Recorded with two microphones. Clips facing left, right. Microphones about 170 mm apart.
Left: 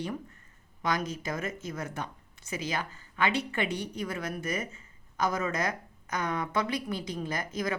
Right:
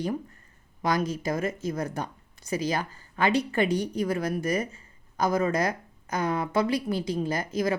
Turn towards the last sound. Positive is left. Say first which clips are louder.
# right 5 dB
turn(degrees=-30)  # may be behind; listen again after turning